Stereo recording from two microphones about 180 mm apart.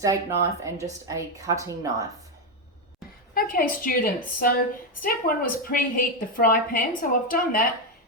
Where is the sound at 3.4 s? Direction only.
55° left (ahead or behind).